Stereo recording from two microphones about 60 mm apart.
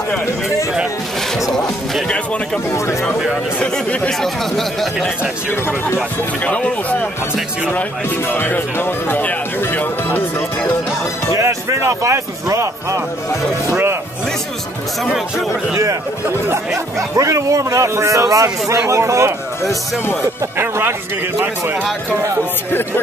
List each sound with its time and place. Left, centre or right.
1.5 s speech: centre
2.7 s speech: left
3.5 s speech: centre
4.2 s speech: centre
6.4 s speech: left
8.3 s speech: left
11.3 s speech: right
15.7 s speech: right
17.1 s speech: right
20.5 s speech: right